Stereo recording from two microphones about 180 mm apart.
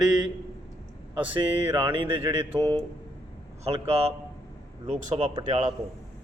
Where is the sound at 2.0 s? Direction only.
30° right (ahead or behind).